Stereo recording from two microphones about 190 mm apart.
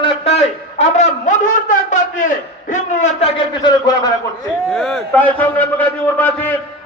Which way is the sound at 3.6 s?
20° left (ahead or behind).